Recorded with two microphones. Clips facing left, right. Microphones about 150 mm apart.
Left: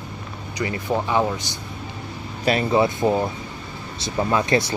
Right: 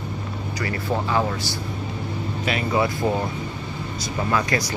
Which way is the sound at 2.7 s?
25° left (ahead or behind).